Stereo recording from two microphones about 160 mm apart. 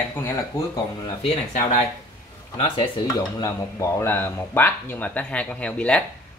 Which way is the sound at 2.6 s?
35° left (ahead or behind).